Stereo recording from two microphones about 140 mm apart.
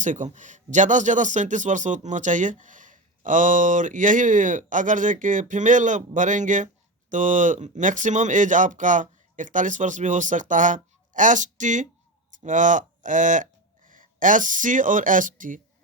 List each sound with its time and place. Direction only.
0.0 s a man's voice: 60° right (ahead or behind)